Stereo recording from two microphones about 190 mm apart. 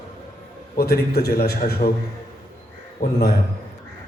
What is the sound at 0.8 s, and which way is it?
A man's voice, 55° left (ahead or behind).